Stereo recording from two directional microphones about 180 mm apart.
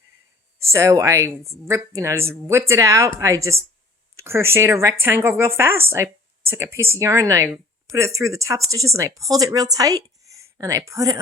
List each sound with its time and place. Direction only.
0.6 s a woman's voice: 15° right (ahead or behind)